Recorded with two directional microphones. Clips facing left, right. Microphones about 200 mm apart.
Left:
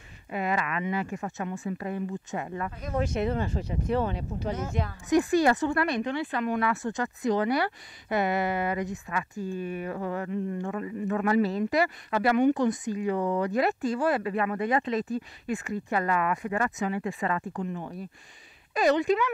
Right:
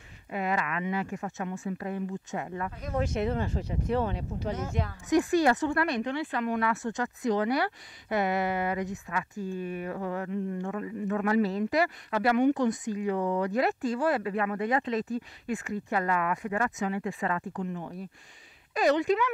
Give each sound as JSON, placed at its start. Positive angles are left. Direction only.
{"t": 0.3, "sound": "speech", "side_deg": 15}
{"t": 18.8, "sound": "speech", "side_deg": 15}